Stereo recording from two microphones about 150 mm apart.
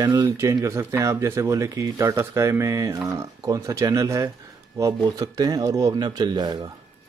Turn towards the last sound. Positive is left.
turn(degrees=-30)  # may be behind; listen again after turning